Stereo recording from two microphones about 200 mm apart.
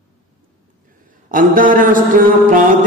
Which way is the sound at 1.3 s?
45° right (ahead or behind).